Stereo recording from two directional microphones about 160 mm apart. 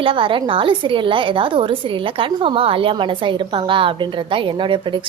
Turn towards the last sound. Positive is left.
turn(degrees=-30)  # may be behind; listen again after turning